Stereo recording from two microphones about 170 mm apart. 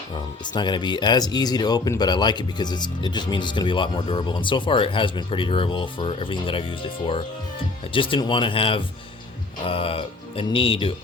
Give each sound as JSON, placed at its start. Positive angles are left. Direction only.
{"t": 0.4, "sound": "speech", "side_deg": 25}